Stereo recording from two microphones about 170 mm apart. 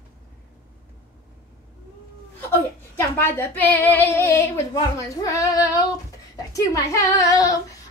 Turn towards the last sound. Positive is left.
turn(degrees=20)  # may be behind; listen again after turning